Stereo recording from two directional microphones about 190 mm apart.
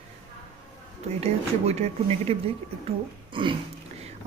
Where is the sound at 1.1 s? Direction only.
35° right (ahead or behind).